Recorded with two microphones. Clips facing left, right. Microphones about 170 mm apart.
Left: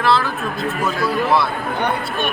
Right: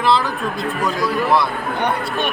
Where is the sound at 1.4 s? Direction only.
20° right (ahead or behind).